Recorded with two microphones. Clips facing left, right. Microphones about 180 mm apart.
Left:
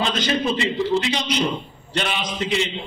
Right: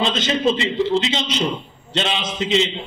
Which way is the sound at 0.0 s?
20° right (ahead or behind).